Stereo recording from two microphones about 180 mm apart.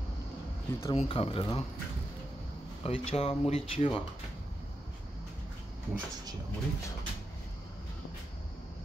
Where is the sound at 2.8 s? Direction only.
35° left (ahead or behind).